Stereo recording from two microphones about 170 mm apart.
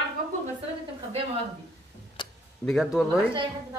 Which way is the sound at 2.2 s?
30° left (ahead or behind).